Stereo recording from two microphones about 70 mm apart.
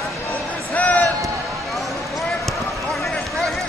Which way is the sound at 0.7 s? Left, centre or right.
Left.